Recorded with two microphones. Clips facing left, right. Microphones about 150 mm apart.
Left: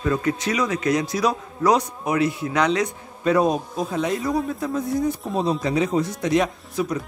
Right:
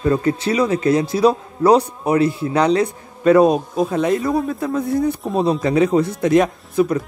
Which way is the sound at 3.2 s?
60° right (ahead or behind).